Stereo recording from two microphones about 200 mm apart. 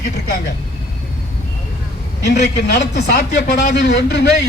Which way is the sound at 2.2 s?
55° left (ahead or behind).